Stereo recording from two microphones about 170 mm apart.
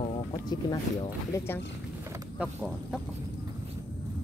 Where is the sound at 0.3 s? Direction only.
25° left (ahead or behind).